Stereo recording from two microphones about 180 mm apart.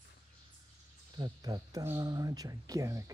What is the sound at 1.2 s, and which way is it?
Speech, 20° right (ahead or behind).